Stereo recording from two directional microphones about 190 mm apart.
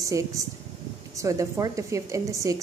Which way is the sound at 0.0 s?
15° right (ahead or behind).